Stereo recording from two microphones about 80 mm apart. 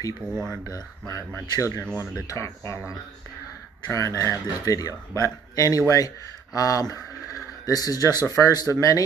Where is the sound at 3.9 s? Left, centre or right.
Left.